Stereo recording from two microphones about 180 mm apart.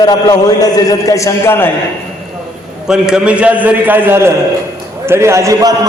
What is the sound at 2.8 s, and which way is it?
A man's voice, 5° right (ahead or behind).